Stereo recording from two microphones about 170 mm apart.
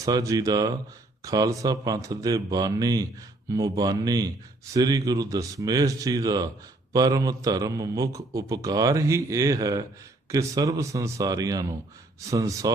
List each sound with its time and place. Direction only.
0.0 s a man's voice: 20° right (ahead or behind)